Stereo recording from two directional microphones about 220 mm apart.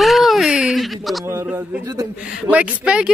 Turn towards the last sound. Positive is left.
turn(degrees=-5)  # may be behind; listen again after turning